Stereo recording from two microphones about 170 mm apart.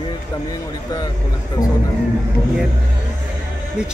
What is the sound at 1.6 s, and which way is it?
Speech, 20° left (ahead or behind).